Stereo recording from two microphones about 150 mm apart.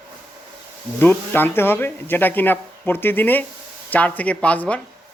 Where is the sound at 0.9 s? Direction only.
10° left (ahead or behind).